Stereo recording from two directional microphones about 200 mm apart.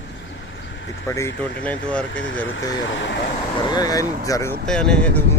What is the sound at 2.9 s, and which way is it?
Speech, 65° left (ahead or behind).